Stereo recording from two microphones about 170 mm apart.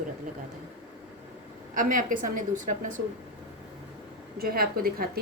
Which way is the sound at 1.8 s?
50° right (ahead or behind).